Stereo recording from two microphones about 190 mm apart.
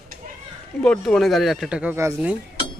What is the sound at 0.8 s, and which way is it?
Speech, 5° left (ahead or behind).